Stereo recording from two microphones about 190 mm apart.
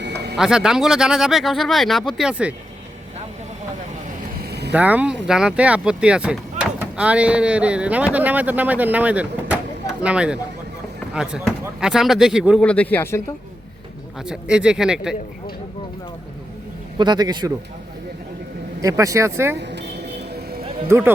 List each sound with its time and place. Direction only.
0.0 s a sound: 60° right (ahead or behind)
0.3 s speech: 5° right (ahead or behind)
4.4 s vehicle: 60° right (ahead or behind)
4.7 s speech: 10° right (ahead or behind)
12.6 s speech: 5° left (ahead or behind)
14.3 s speech: 5° right (ahead or behind)
17.0 s a man's voice: 20° right (ahead or behind)
18.8 s speech: 15° right (ahead or behind)
19.7 s music: 60° right (ahead or behind)
20.8 s speech: 10° right (ahead or behind)